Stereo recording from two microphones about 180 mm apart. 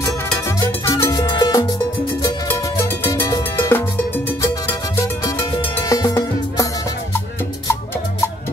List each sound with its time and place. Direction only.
0.6 s music: 15° left (ahead or behind)